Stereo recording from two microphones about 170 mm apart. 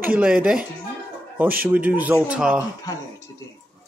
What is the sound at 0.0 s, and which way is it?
Speech, 10° right (ahead or behind).